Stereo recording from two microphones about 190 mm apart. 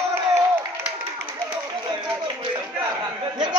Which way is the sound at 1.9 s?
25° right (ahead or behind).